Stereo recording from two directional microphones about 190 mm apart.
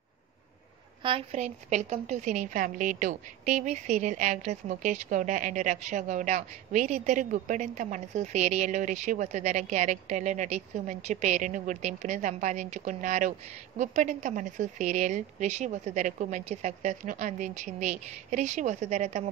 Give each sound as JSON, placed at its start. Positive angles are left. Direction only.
{"t": 1.0, "sound": "a woman's voice", "side_deg": -30}